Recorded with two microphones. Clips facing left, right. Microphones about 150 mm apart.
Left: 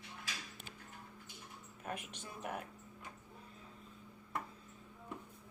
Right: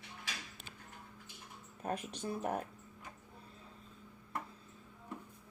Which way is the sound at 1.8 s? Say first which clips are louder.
Right 7 dB; 35° right (ahead or behind).